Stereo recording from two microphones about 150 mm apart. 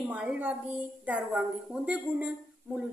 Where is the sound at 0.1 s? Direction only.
10° right (ahead or behind).